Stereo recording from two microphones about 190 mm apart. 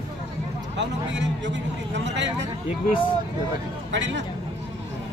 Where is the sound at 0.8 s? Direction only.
70° right (ahead or behind).